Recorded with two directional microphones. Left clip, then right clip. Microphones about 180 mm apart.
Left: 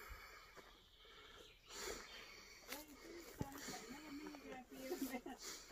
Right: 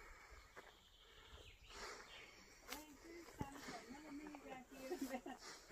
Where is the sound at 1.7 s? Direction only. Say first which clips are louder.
Left 4 dB; 25° left (ahead or behind).